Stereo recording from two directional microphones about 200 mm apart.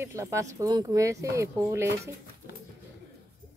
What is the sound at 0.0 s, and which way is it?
Speech, 15° right (ahead or behind).